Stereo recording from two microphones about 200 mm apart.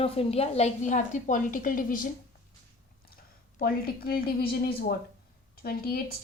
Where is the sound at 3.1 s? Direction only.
50° left (ahead or behind).